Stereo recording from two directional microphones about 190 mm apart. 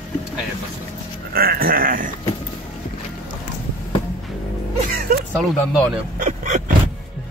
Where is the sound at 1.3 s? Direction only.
55° right (ahead or behind).